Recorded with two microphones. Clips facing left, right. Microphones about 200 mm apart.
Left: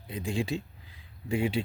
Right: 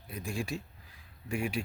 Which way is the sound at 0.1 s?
20° left (ahead or behind).